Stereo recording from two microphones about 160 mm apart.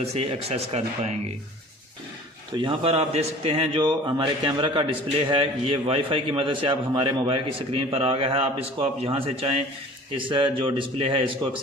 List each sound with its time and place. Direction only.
0.0 s a man's voice: 40° right (ahead or behind)
2.6 s a man's voice: 35° right (ahead or behind)